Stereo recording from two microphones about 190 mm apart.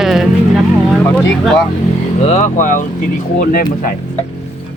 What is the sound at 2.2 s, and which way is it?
Speech, 35° left (ahead or behind).